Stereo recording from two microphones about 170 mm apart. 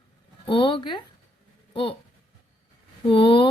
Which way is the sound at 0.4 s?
30° left (ahead or behind).